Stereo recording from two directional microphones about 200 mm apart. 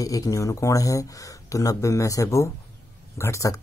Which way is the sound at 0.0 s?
15° left (ahead or behind).